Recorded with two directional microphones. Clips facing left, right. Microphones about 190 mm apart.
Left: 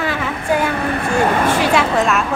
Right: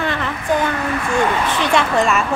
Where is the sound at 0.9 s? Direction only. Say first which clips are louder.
Left 2 dB; 40° left (ahead or behind).